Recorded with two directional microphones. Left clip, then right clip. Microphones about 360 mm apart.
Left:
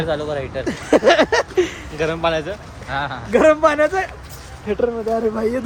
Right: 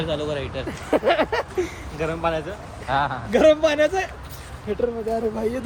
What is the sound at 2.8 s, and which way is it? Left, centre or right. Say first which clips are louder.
A man's voice: right 1 dB; centre.